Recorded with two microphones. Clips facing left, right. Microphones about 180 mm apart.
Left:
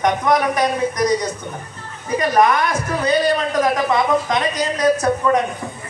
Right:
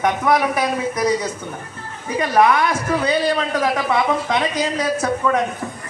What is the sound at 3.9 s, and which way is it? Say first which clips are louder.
A woman's voice: left 1 dB; 10° right (ahead or behind).